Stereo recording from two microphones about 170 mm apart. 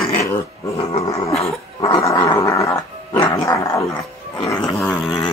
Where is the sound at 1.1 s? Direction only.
35° left (ahead or behind).